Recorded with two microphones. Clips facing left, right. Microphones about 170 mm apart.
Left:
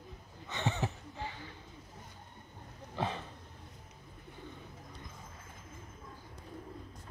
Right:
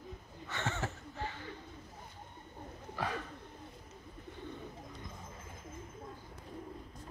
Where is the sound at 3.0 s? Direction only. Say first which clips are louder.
Left 2 dB; 25° left (ahead or behind).